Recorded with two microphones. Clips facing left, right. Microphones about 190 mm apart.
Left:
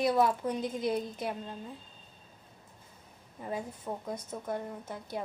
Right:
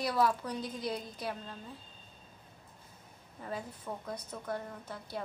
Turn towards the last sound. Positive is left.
turn(degrees=20)  # may be behind; listen again after turning